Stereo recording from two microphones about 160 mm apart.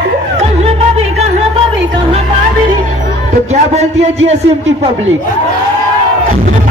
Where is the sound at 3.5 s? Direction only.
45° right (ahead or behind).